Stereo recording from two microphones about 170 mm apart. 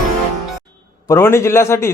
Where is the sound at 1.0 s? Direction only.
15° left (ahead or behind).